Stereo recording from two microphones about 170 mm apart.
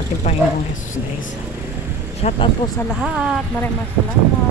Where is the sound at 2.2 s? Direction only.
40° left (ahead or behind).